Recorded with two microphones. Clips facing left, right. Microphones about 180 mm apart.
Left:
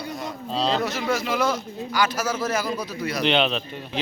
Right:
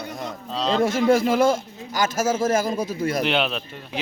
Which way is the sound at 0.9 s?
50° right (ahead or behind).